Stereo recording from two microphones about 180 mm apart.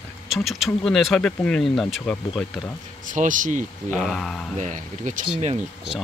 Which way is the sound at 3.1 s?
45° right (ahead or behind).